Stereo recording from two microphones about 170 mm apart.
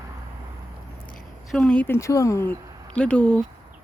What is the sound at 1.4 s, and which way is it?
Speech, 5° left (ahead or behind).